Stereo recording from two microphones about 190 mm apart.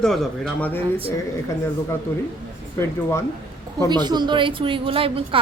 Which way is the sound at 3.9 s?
20° right (ahead or behind).